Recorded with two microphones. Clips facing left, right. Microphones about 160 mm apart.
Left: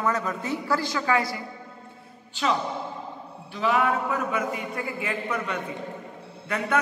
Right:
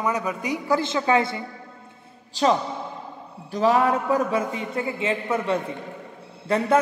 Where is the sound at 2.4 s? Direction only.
35° right (ahead or behind).